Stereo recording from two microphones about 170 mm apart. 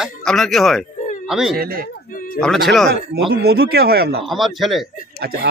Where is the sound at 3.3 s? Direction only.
65° right (ahead or behind).